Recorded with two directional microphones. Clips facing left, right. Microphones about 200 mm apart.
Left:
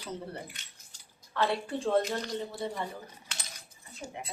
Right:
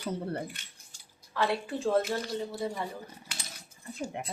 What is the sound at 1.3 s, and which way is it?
Speech, 5° right (ahead or behind).